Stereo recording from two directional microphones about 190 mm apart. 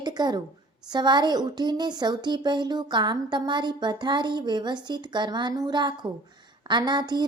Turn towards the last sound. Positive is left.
turn(degrees=-25)  # may be behind; listen again after turning